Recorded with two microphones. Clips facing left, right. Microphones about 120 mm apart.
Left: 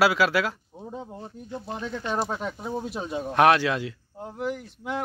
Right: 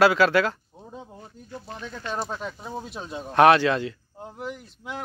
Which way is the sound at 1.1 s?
25° left (ahead or behind).